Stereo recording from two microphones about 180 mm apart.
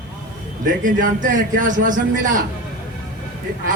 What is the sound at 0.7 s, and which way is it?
A woman's voice, 45° right (ahead or behind).